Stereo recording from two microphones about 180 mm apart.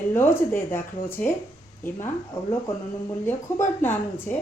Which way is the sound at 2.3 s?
15° left (ahead or behind).